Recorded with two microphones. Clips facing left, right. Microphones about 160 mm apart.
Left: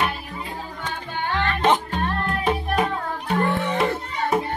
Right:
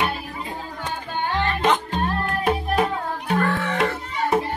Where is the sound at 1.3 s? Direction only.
15° right (ahead or behind).